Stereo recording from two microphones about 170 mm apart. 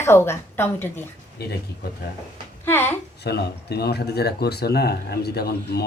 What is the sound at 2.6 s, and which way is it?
Speech, 15° left (ahead or behind).